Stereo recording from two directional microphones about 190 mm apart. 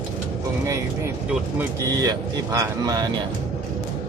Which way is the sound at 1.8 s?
20° right (ahead or behind).